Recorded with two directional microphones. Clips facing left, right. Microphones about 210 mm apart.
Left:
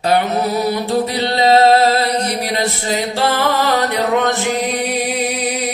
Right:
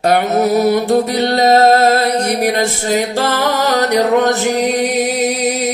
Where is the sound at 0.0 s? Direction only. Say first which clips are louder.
Right 3 dB; 45° right (ahead or behind).